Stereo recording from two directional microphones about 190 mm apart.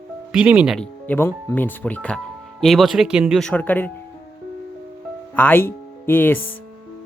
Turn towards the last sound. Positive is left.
turn(degrees=10)  # may be behind; listen again after turning